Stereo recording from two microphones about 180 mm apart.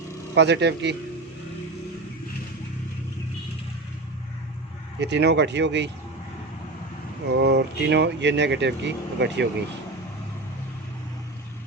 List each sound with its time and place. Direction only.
0.3 s speech: 70° right (ahead or behind)
4.9 s speech: 70° right (ahead or behind)
7.4 s speech: 70° right (ahead or behind)